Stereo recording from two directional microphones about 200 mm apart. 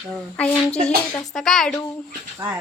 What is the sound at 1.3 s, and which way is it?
Speech, centre (ahead or behind).